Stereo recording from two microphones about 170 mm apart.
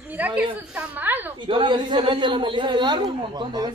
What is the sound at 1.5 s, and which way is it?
A man's voice, 30° right (ahead or behind).